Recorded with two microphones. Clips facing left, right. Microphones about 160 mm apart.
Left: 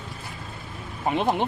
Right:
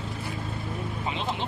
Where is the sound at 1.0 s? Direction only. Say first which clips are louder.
Left 10 dB; 55° left (ahead or behind).